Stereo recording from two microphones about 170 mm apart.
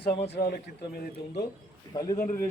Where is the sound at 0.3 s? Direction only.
65° left (ahead or behind).